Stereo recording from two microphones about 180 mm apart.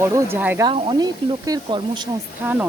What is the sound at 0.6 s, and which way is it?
Speech, 25° right (ahead or behind).